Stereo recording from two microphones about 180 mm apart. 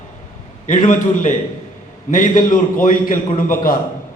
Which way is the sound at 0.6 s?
45° left (ahead or behind).